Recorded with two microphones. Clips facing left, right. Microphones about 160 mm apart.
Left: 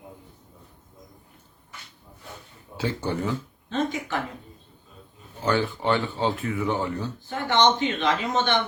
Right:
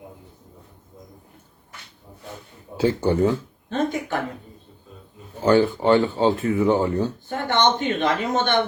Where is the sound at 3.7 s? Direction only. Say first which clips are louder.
Right 3 dB; 50° right (ahead or behind).